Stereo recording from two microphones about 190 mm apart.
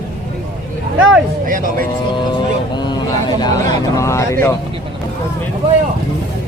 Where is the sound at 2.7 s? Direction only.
20° left (ahead or behind).